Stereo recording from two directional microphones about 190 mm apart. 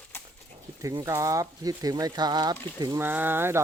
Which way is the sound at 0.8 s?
15° right (ahead or behind).